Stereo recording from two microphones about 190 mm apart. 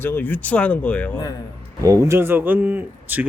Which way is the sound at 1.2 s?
20° left (ahead or behind).